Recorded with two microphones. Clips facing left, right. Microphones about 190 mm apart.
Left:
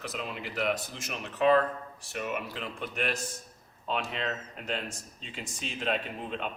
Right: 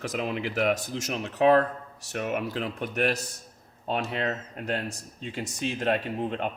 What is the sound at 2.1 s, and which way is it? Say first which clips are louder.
Speech: right 5 dB; 55° right (ahead or behind).